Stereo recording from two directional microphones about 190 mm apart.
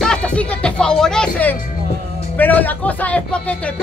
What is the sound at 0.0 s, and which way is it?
Music, 5° left (ahead or behind).